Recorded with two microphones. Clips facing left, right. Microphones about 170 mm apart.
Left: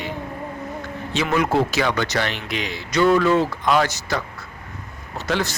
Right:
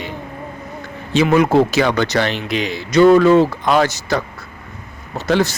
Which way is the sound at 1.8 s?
65° right (ahead or behind).